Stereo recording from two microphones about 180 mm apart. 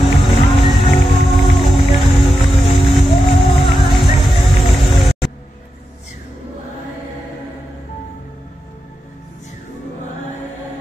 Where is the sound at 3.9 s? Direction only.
Centre (ahead or behind).